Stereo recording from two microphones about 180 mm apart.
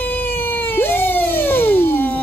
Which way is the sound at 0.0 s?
10° left (ahead or behind).